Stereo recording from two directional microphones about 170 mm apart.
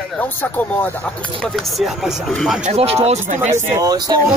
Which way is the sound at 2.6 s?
35° right (ahead or behind).